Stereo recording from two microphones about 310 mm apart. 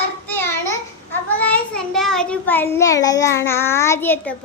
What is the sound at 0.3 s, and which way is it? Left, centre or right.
Child singing, left.